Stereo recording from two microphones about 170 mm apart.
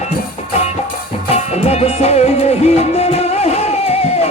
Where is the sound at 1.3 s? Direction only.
40° left (ahead or behind).